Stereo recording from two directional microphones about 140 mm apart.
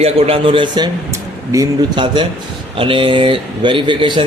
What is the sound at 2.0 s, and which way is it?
A man's voice, 35° right (ahead or behind).